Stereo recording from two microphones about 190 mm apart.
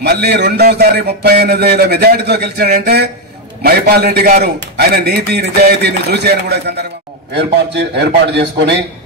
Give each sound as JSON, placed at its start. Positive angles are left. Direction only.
{"t": 0.0, "sound": "a man's voice", "side_deg": -60}